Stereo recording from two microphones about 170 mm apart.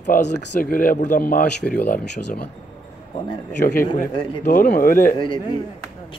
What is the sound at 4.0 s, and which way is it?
Speech, 55° left (ahead or behind).